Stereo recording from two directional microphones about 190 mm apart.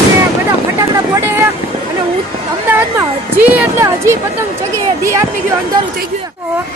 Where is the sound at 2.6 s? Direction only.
15° right (ahead or behind).